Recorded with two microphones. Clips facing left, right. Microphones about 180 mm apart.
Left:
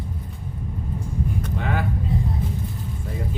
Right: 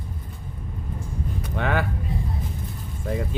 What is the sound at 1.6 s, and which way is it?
Speech, 70° right (ahead or behind).